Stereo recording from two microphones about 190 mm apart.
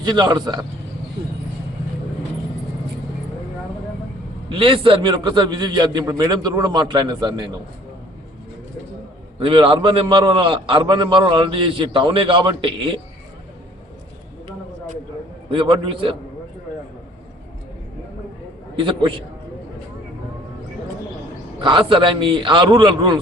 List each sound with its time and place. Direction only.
0.0 s a man's voice: 20° right (ahead or behind)
4.4 s a man's voice: 25° right (ahead or behind)
9.4 s a man's voice: 25° right (ahead or behind)
15.4 s a man's voice: 25° right (ahead or behind)
18.8 s a man's voice: 25° right (ahead or behind)
21.6 s a man's voice: 25° right (ahead or behind)